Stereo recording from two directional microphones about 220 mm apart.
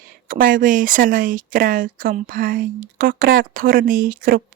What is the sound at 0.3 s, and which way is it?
Speech, 40° right (ahead or behind).